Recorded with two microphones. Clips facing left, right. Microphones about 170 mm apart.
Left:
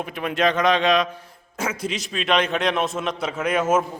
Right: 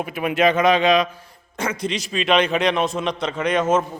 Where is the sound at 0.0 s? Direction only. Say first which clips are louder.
Right 3 dB; 5° right (ahead or behind).